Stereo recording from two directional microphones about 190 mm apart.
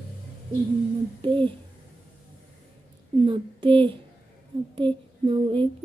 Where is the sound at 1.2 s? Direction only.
25° right (ahead or behind).